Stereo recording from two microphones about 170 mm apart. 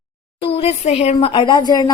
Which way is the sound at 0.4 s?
35° left (ahead or behind).